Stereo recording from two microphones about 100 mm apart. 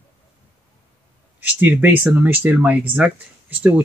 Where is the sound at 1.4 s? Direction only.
20° right (ahead or behind).